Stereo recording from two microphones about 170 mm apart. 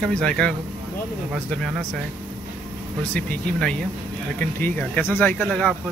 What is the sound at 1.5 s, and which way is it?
Speech, 5° left (ahead or behind).